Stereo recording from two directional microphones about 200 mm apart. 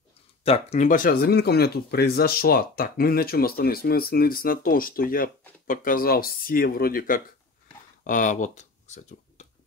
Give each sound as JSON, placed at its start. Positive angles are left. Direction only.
{"t": 0.4, "sound": "speech", "side_deg": 30}